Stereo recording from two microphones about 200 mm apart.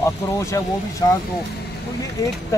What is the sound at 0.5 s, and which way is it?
Speech, 15° left (ahead or behind).